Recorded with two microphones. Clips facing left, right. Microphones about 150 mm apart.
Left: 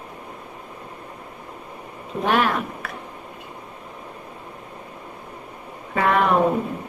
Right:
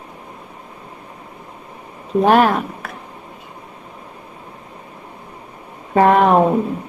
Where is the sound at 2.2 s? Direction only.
45° right (ahead or behind).